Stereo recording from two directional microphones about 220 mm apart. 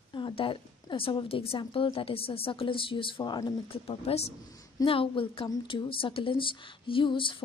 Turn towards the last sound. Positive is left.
turn(degrees=20)  # may be behind; listen again after turning